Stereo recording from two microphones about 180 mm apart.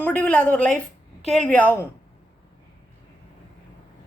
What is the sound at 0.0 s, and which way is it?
Speech, 10° left (ahead or behind).